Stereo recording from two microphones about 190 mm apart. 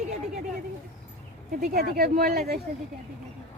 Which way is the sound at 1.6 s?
50° right (ahead or behind).